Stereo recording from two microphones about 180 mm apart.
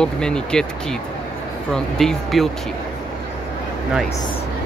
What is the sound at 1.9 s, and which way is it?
Speech, centre (ahead or behind).